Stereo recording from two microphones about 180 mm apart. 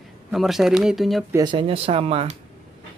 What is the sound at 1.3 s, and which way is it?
Speech, 25° right (ahead or behind).